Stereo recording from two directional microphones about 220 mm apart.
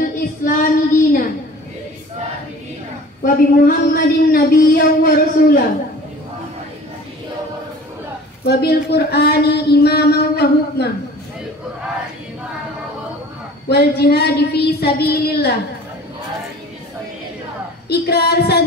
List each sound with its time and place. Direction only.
0.0 s child singing: 40° left (ahead or behind)
3.2 s speech: 40° left (ahead or behind)
8.5 s speech: 50° left (ahead or behind)
13.7 s speech: 45° left (ahead or behind)
17.8 s speech: 45° left (ahead or behind)